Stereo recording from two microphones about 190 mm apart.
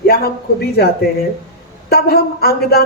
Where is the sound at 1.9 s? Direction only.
55° left (ahead or behind).